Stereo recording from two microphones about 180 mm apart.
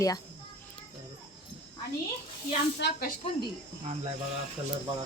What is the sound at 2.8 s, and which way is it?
Speech, 70° left (ahead or behind).